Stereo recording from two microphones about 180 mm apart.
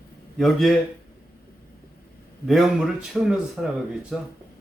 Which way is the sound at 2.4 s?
Centre (ahead or behind).